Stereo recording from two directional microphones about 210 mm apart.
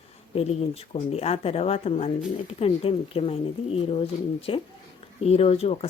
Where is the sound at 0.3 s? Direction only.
30° left (ahead or behind).